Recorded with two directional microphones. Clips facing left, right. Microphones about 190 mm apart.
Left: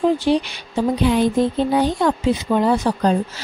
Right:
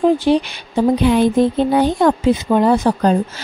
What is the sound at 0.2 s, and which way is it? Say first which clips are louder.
Speech: right 3 dB; 55° right (ahead or behind).